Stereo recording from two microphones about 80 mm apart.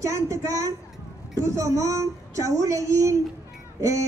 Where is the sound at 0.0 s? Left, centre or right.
Right.